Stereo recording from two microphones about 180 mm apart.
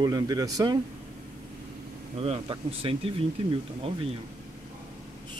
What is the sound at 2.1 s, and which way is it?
Speech, 35° right (ahead or behind).